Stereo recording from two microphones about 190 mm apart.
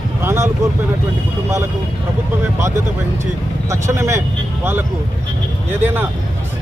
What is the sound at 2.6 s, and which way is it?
Speech, 15° right (ahead or behind).